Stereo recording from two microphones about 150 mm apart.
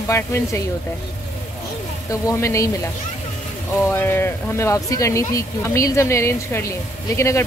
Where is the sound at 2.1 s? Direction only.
20° left (ahead or behind).